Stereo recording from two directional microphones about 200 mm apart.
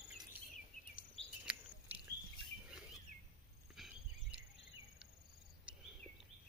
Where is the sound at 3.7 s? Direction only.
Centre (ahead or behind).